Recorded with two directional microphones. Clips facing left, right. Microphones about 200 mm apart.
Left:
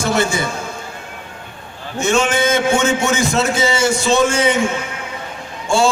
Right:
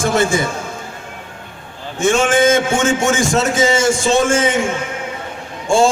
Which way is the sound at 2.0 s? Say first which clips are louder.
Right 3 dB; 50° right (ahead or behind).